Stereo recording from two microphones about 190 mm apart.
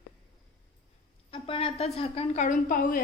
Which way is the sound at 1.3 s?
30° left (ahead or behind).